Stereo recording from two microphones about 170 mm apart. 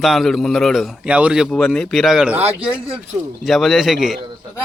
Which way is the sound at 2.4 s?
35° right (ahead or behind).